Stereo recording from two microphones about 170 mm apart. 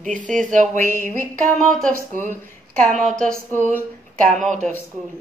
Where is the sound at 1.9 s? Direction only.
50° right (ahead or behind).